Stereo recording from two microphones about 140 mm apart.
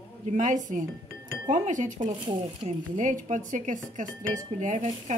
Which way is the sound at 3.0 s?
60° right (ahead or behind).